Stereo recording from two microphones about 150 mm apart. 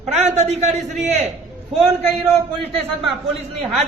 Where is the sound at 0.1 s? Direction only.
45° right (ahead or behind).